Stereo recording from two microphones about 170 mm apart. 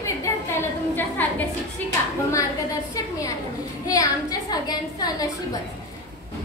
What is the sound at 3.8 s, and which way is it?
A woman's voice, 20° left (ahead or behind).